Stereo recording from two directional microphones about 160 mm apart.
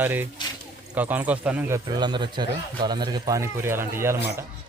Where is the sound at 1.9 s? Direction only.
25° right (ahead or behind).